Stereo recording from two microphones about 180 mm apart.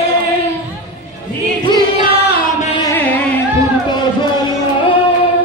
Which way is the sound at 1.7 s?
25° right (ahead or behind).